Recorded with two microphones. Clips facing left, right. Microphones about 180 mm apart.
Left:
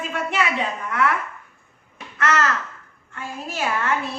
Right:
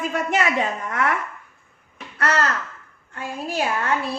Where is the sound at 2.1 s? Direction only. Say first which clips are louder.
Left 1 dB; 35° right (ahead or behind).